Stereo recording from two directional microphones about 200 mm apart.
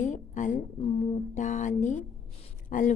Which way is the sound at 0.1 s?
40° left (ahead or behind).